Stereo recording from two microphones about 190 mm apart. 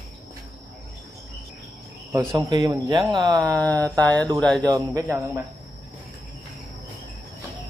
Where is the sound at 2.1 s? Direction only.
15° right (ahead or behind).